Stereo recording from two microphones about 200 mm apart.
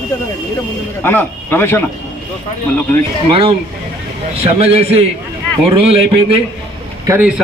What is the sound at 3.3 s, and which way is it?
A man's voice, 25° right (ahead or behind).